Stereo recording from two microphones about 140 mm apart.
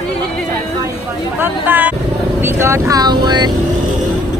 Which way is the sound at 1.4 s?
15° right (ahead or behind).